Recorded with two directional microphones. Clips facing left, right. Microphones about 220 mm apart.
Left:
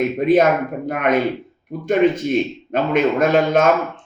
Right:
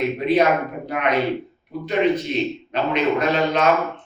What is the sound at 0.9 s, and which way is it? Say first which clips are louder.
A man's voice: left 3 dB; 50° left (ahead or behind).